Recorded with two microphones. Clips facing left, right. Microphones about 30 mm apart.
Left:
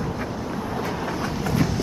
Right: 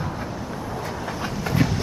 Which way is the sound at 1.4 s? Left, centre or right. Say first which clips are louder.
Right 1 dB; centre.